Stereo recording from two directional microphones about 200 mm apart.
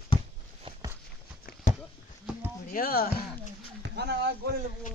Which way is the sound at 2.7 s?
50° left (ahead or behind).